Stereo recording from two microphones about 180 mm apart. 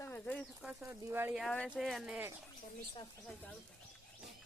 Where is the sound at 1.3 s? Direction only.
5° left (ahead or behind).